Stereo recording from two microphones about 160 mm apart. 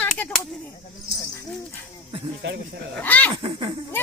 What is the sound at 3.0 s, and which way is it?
Speech, 10° left (ahead or behind).